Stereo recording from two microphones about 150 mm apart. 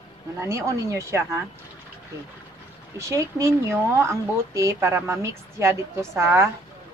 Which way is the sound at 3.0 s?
20° right (ahead or behind).